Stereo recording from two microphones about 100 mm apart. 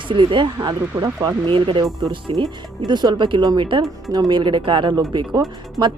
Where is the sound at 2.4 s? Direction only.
45° right (ahead or behind).